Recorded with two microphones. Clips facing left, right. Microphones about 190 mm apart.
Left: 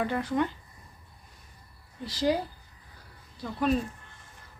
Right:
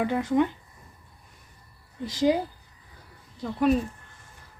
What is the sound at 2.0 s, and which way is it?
Speech, 20° right (ahead or behind).